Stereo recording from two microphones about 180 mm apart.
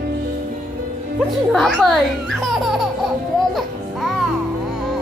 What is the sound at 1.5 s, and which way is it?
A child's voice, centre (ahead or behind).